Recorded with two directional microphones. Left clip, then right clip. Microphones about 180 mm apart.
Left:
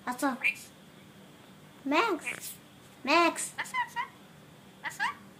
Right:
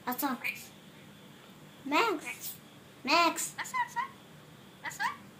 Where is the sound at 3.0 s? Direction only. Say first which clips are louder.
Left 1 dB; 45° left (ahead or behind).